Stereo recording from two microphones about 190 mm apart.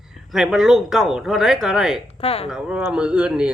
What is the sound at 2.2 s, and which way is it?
Speech, 30° left (ahead or behind).